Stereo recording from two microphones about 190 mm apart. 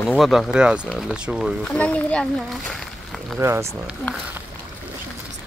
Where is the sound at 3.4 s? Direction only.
15° right (ahead or behind).